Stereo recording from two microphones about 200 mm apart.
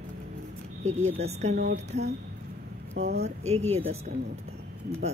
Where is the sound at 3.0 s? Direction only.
55° right (ahead or behind).